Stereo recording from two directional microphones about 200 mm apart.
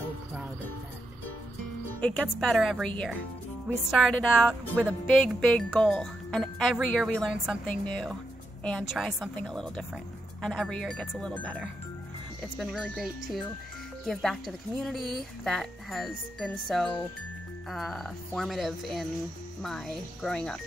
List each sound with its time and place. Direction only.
2.0 s speech: 5° left (ahead or behind)